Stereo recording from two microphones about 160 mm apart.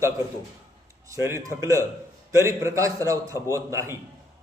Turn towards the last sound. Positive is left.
turn(degrees=-15)  # may be behind; listen again after turning